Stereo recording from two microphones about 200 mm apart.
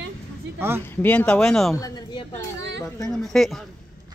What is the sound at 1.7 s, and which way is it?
Speech, 20° left (ahead or behind).